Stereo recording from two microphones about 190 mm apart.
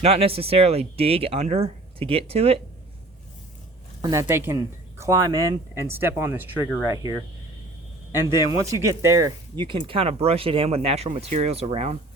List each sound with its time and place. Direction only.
0.0 s speech: 30° right (ahead or behind)
4.0 s speech: 15° right (ahead or behind)
8.4 s speech: 15° right (ahead or behind); by 11.9 s 35° right (ahead or behind)